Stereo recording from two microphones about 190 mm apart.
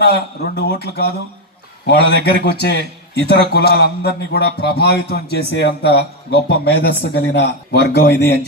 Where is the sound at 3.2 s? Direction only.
60° left (ahead or behind).